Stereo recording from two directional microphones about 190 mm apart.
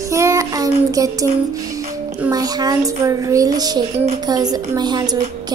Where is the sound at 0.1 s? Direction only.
15° right (ahead or behind).